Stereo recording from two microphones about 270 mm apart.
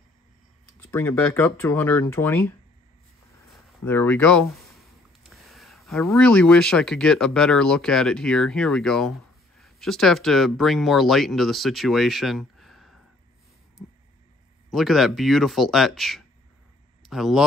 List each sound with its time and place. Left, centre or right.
0.9 s speech: centre
14.7 s speech: centre